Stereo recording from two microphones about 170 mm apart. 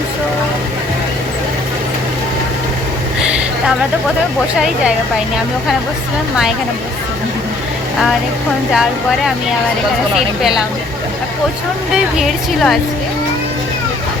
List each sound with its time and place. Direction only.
8.7 s a woman's voice: 5° right (ahead or behind)
12.1 s a woman's voice: centre (ahead or behind)